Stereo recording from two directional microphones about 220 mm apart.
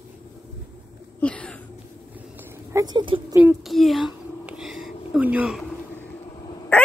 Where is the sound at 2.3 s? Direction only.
10° right (ahead or behind).